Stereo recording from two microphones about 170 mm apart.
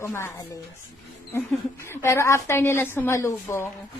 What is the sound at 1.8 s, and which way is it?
A woman's voice, 15° left (ahead or behind).